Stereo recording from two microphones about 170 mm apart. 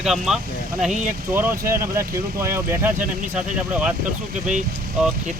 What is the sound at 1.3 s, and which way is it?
Speech, 15° right (ahead or behind).